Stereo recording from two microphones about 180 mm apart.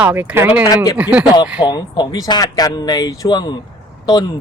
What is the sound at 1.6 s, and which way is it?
A man's voice, 20° left (ahead or behind).